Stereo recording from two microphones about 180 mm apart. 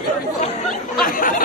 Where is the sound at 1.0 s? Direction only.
50° left (ahead or behind).